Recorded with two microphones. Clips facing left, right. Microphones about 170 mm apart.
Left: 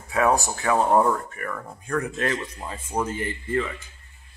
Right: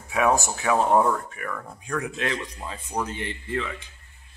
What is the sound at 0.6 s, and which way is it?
Speech, centre (ahead or behind).